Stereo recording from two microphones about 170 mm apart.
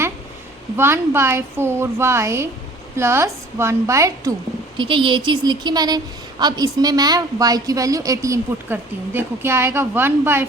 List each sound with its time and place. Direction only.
0.8 s a woman's voice: 15° right (ahead or behind)
4.8 s a woman's voice: 30° right (ahead or behind); by 10.4 s 15° right (ahead or behind)